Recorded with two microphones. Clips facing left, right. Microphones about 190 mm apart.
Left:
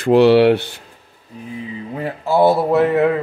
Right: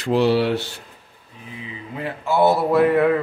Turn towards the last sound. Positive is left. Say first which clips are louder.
# left 1 dB
turn(degrees=25)  # may be behind; listen again after turning